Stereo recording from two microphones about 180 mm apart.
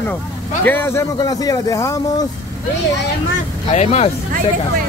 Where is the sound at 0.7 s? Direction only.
15° left (ahead or behind).